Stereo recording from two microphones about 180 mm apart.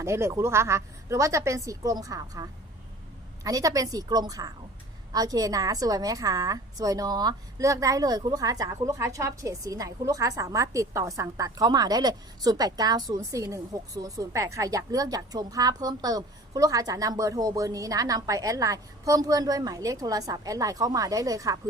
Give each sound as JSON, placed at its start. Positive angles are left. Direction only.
{"t": 0.0, "sound": "a woman's voice", "side_deg": -15}